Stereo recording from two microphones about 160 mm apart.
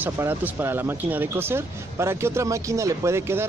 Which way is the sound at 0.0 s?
10° right (ahead or behind).